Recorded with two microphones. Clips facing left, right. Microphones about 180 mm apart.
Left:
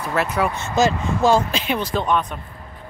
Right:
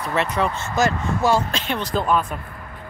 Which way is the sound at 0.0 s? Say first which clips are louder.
Left 1 dB; 5° left (ahead or behind).